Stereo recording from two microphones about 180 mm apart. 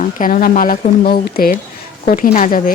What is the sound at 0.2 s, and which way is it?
A woman's voice, 50° left (ahead or behind).